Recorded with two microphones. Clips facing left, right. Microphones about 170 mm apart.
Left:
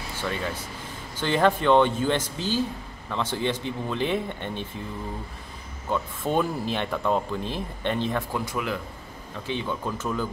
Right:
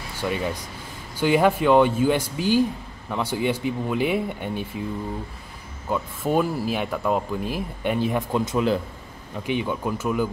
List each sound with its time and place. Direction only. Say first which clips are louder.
0.1 s speech: right 4 dB; 15° right (ahead or behind)
5.9 s speech: right 2 dB; 5° right (ahead or behind)
8.3 s speech: right 7 dB; 20° right (ahead or behind)
9.5 s speech: right 4 dB; 15° right (ahead or behind)